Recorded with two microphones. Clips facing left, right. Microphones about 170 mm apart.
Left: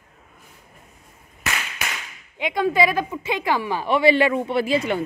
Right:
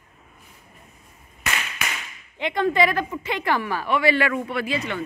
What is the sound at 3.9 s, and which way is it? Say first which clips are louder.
Speech: left 4 dB; 25° left (ahead or behind).